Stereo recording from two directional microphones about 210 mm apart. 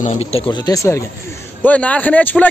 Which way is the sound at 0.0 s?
30° left (ahead or behind).